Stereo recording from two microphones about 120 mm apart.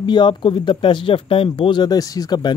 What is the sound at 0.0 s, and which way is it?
Speech, 40° left (ahead or behind).